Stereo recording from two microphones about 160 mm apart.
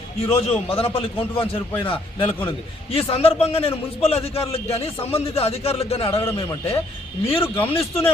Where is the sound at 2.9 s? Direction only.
35° left (ahead or behind).